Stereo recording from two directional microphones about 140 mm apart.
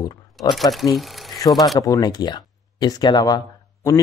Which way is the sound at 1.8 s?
25° left (ahead or behind).